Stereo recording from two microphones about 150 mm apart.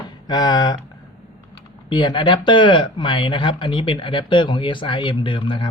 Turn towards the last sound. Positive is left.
turn(degrees=35)  # may be behind; listen again after turning